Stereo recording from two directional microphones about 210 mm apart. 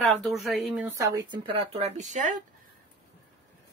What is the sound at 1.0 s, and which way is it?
A woman's voice, 20° right (ahead or behind).